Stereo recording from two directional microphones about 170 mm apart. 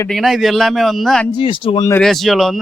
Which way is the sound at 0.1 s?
Centre (ahead or behind).